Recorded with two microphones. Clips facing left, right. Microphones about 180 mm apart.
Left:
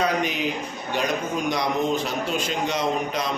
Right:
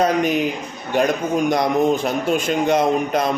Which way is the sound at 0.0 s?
50° right (ahead or behind).